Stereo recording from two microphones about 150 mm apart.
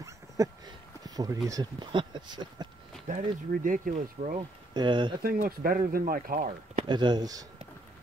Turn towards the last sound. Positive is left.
turn(degrees=-25)  # may be behind; listen again after turning